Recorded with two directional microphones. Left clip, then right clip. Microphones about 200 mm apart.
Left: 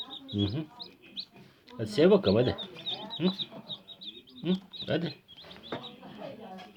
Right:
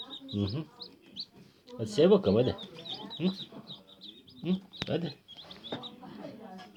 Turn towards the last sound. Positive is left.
turn(degrees=20)  # may be behind; listen again after turning